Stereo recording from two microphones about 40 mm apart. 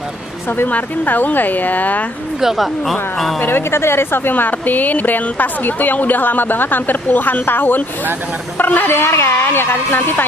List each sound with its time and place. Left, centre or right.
0.7 s speech: left
2.4 s speech: centre
3.4 s speech: left
4.3 s speech: left
8.8 s speech: left